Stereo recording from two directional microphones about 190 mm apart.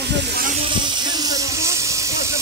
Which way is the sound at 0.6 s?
25° right (ahead or behind).